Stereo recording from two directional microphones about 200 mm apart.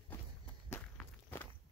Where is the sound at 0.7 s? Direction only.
10° left (ahead or behind).